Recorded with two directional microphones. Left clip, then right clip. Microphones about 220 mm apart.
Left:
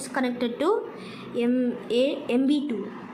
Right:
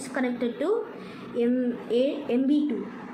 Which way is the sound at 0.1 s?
20° left (ahead or behind).